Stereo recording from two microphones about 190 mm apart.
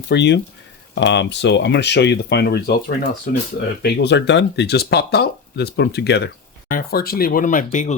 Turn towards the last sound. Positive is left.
turn(degrees=40)  # may be behind; listen again after turning